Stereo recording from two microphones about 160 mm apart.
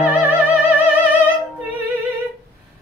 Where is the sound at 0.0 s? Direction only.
10° right (ahead or behind).